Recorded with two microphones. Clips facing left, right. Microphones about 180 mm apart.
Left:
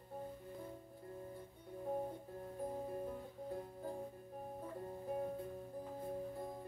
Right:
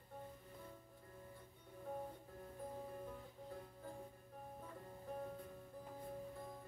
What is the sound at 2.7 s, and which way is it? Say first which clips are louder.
Music: left 6 dB; 35° left (ahead or behind).